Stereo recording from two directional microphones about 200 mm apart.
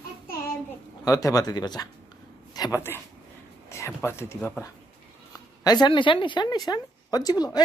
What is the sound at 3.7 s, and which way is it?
Speech, 15° left (ahead or behind).